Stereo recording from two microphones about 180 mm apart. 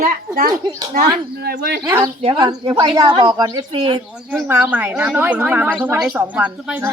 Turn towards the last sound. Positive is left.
turn(degrees=-10)  # may be behind; listen again after turning